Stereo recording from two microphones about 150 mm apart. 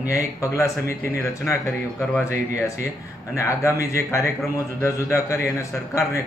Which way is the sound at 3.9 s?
20° left (ahead or behind).